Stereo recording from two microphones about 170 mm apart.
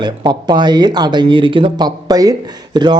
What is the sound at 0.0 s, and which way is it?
Speech, 25° right (ahead or behind).